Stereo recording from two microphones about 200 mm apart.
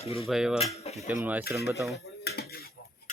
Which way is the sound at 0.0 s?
30° left (ahead or behind).